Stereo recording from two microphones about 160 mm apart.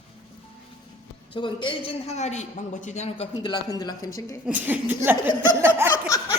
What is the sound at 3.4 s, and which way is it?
Speech, 25° left (ahead or behind).